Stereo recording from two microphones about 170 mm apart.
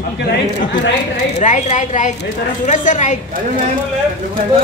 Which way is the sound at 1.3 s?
45° left (ahead or behind).